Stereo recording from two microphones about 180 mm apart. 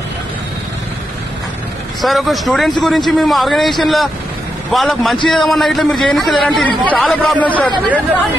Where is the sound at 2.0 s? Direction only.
Centre (ahead or behind).